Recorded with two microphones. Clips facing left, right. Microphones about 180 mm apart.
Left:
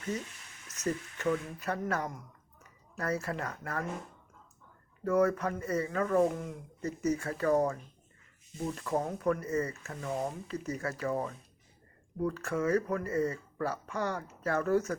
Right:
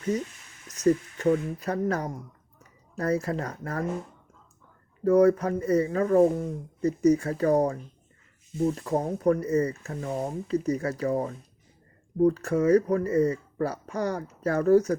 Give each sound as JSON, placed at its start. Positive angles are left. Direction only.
{"t": 1.2, "sound": "speech", "side_deg": -40}
{"t": 5.0, "sound": "speech", "side_deg": -35}